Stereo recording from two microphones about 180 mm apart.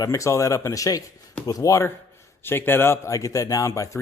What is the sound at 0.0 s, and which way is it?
Speech, 15° left (ahead or behind).